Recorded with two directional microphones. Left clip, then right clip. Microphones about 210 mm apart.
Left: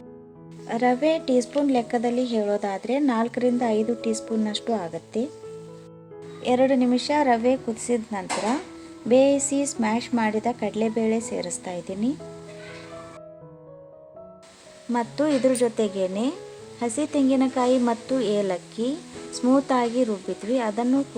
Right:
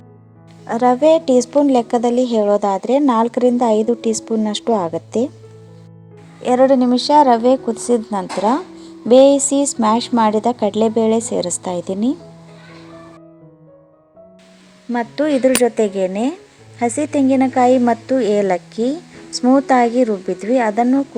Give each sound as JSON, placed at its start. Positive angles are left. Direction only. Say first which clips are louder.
{"t": 0.7, "sound": "a woman's voice", "louder": "right 9 dB", "side_deg": -25}
{"t": 6.4, "sound": "a woman's voice", "louder": "right 8 dB", "side_deg": -25}
{"t": 14.9, "sound": "a woman's voice", "louder": "right 6 dB", "side_deg": -20}